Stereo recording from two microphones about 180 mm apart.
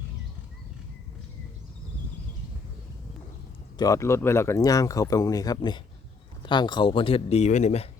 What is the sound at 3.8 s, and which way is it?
Speech, 20° left (ahead or behind).